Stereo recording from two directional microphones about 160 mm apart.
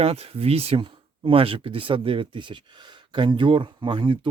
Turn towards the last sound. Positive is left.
turn(degrees=-30)  # may be behind; listen again after turning